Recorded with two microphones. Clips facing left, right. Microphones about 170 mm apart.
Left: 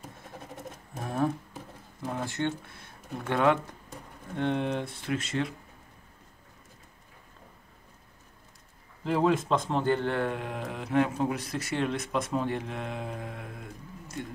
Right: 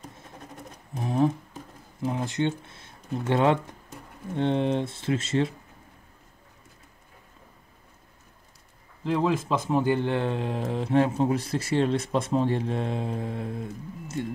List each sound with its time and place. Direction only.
0.9 s a sound: 15° right (ahead or behind)
2.0 s speech: 20° right (ahead or behind)
9.0 s speech: centre (ahead or behind); by 14.1 s 30° right (ahead or behind)